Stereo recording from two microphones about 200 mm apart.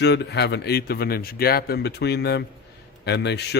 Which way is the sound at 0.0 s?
55° left (ahead or behind).